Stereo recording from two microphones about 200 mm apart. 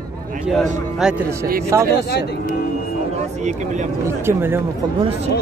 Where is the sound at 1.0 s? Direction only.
5° right (ahead or behind).